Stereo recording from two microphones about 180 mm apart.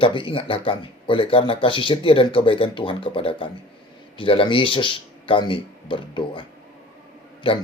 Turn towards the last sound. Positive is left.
turn(degrees=30)  # may be behind; listen again after turning